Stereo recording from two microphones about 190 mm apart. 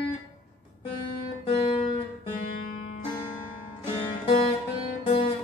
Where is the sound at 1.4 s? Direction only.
30° left (ahead or behind).